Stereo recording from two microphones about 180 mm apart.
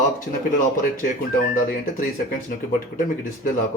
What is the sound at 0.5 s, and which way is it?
Speech, 50° left (ahead or behind).